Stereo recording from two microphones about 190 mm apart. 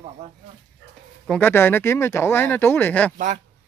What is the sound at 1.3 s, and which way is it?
Speech, 10° left (ahead or behind).